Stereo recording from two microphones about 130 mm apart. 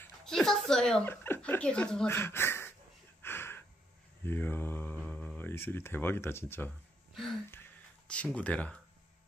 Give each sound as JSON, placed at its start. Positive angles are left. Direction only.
{"t": 0.2, "sound": "speech", "side_deg": 5}
{"t": 1.0, "sound": "speech", "side_deg": 15}
{"t": 2.0, "sound": "speech", "side_deg": 20}
{"t": 3.2, "sound": "a sound", "side_deg": 15}
{"t": 4.3, "sound": "speech", "side_deg": 15}
{"t": 8.1, "sound": "speech", "side_deg": 10}